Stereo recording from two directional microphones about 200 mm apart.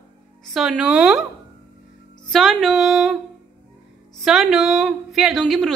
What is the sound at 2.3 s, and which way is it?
Speech, centre (ahead or behind).